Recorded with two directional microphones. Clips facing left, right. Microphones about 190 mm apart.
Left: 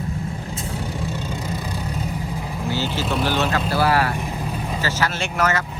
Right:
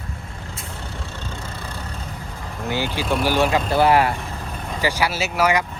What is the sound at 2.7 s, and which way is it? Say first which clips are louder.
Vehicle: right 1 dB; 15° right (ahead or behind).